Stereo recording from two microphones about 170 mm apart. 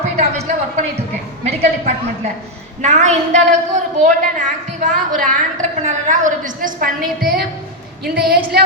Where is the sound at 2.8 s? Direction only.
45° right (ahead or behind).